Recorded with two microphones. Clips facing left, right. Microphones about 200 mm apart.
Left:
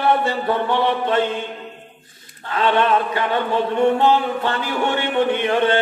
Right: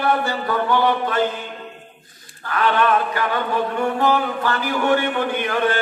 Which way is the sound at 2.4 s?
25° left (ahead or behind).